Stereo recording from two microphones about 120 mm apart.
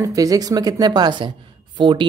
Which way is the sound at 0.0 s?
30° right (ahead or behind).